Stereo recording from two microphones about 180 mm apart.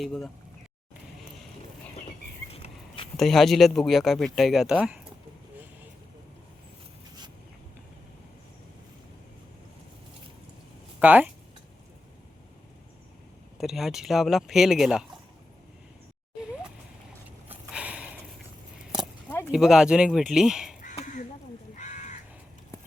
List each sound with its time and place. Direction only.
0.0 s speech: centre (ahead or behind)
2.0 s a sound: 35° left (ahead or behind)
3.2 s speech: centre (ahead or behind)
11.0 s speech: 10° right (ahead or behind)
13.6 s speech: centre (ahead or behind)
17.5 s a sound: 5° right (ahead or behind)
19.5 s speech: 5° right (ahead or behind)
20.8 s crow: 45° left (ahead or behind)